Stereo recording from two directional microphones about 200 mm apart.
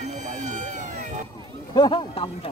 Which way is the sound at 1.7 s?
25° left (ahead or behind).